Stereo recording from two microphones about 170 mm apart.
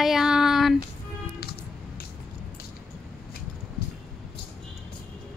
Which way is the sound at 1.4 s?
65° left (ahead or behind).